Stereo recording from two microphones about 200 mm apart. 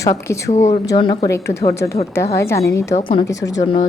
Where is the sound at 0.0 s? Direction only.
15° left (ahead or behind).